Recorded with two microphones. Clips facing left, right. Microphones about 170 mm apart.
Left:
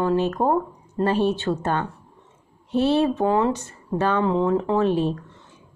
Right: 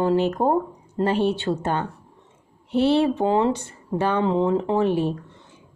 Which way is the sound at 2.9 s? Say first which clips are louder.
Even; 30° right (ahead or behind).